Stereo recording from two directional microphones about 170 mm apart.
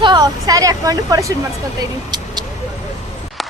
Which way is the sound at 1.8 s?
25° right (ahead or behind).